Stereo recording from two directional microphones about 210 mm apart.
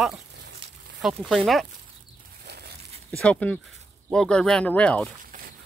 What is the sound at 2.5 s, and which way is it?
Crumpling, 50° right (ahead or behind).